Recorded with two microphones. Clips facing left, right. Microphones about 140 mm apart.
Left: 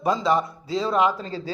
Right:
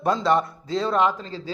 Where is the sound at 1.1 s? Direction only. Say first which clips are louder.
Left 3 dB; 40° left (ahead or behind).